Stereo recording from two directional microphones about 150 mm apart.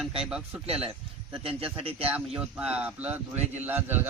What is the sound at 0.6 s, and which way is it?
A man's voice, 40° right (ahead or behind).